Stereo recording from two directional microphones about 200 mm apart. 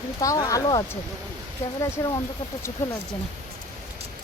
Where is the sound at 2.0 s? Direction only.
15° left (ahead or behind).